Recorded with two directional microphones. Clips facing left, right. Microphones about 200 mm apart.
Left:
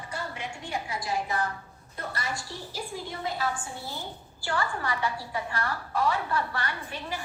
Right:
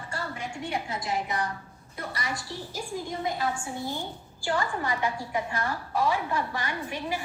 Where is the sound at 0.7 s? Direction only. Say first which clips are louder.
Even; 20° right (ahead or behind).